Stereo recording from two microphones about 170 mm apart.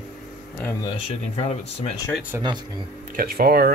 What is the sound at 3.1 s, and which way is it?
Speech, 60° right (ahead or behind).